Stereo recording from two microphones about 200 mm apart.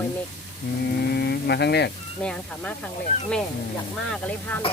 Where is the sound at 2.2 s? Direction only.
5° left (ahead or behind).